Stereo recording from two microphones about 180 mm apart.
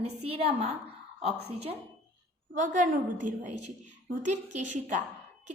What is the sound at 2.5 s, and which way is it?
A woman's voice, 45° right (ahead or behind).